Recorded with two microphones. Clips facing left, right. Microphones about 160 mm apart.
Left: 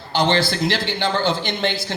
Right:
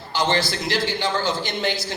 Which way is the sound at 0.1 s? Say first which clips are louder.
Left 3 dB; 60° left (ahead or behind).